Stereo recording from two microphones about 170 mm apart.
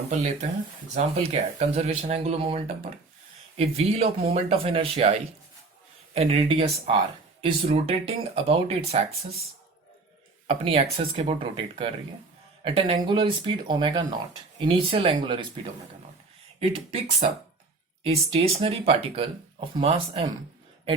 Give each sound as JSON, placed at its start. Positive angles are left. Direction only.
{"t": 0.9, "sound": "speech", "side_deg": -40}
{"t": 6.1, "sound": "speech", "side_deg": -35}
{"t": 10.4, "sound": "speech", "side_deg": -35}
{"t": 16.6, "sound": "speech", "side_deg": -35}